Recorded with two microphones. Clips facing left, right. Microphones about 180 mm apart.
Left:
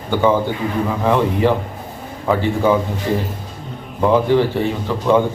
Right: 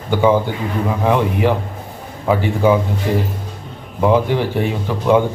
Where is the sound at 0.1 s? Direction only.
10° right (ahead or behind).